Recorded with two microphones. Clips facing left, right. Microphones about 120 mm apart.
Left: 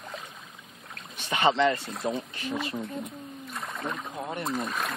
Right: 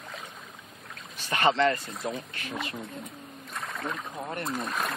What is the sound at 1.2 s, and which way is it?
Speech, 20° left (ahead or behind).